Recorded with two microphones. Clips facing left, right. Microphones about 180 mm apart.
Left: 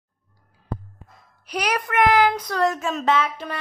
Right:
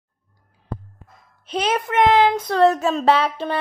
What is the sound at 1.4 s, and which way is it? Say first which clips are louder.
Speech: right 3 dB; 25° right (ahead or behind).